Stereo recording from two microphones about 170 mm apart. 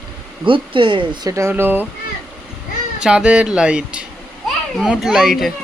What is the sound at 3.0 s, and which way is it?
A child's voice, 5° right (ahead or behind).